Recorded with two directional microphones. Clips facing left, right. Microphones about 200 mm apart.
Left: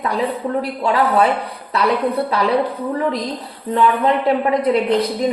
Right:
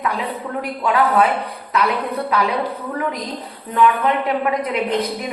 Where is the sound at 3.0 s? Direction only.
30° left (ahead or behind).